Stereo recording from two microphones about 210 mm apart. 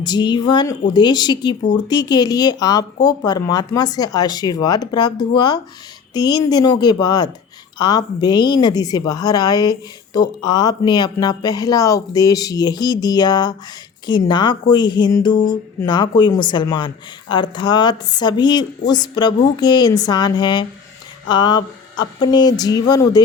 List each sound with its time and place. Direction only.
0.0 s a woman's voice: 20° left (ahead or behind)